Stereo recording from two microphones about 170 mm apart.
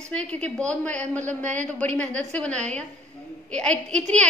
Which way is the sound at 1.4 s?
45° right (ahead or behind).